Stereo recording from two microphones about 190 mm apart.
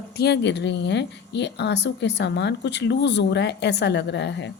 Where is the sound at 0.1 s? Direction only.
60° left (ahead or behind).